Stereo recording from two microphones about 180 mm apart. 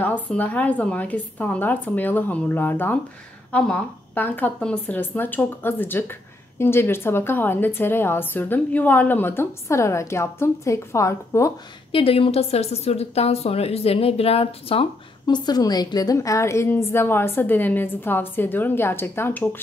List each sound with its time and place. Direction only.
0.0 s a woman's voice: 10° left (ahead or behind)
11.9 s a woman's voice: 30° left (ahead or behind); by 19.6 s 10° left (ahead or behind)